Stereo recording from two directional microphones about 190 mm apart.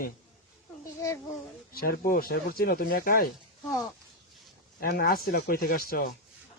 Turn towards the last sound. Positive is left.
turn(degrees=50)  # may be behind; listen again after turning